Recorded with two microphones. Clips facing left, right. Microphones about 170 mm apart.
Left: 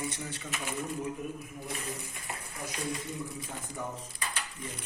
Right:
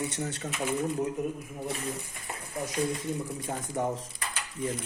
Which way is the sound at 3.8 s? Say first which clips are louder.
Right 9 dB; 70° right (ahead or behind).